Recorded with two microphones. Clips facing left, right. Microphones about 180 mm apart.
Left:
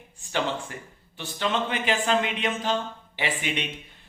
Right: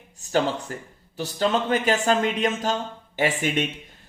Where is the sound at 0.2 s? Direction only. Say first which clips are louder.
Right 5 dB; 40° right (ahead or behind).